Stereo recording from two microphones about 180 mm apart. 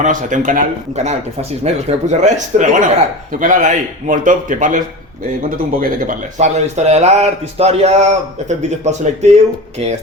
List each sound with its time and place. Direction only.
0.0 s speech: 45° right (ahead or behind)